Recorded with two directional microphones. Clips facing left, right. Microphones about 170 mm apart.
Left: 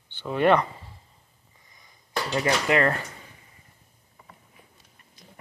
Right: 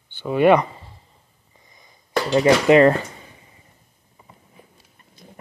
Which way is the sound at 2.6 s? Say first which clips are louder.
Right 10 dB; 25° right (ahead or behind).